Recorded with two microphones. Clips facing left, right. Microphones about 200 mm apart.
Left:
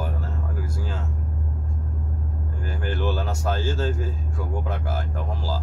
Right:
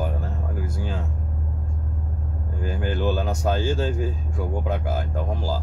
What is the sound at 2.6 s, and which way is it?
Speech, 15° right (ahead or behind).